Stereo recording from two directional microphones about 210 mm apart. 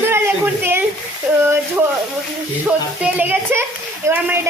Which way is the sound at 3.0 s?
10° right (ahead or behind).